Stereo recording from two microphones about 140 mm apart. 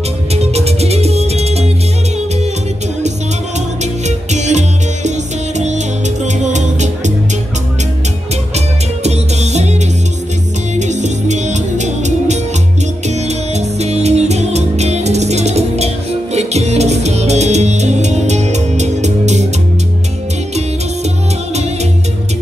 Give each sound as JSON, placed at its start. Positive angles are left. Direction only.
{"t": 0.3, "sound": "music", "side_deg": -50}
{"t": 3.8, "sound": "music", "side_deg": -55}
{"t": 6.2, "sound": "music", "side_deg": -60}
{"t": 8.5, "sound": "music", "side_deg": -50}
{"t": 10.8, "sound": "music", "side_deg": -55}